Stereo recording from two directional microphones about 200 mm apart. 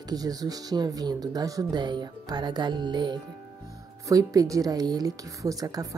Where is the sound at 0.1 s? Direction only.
20° right (ahead or behind).